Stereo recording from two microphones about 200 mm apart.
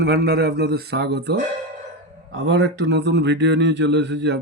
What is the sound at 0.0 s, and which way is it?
Speech, 50° right (ahead or behind).